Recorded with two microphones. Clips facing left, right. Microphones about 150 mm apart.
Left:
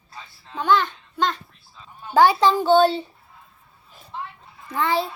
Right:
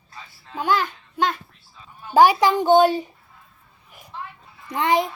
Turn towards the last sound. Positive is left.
turn(degrees=-15)  # may be behind; listen again after turning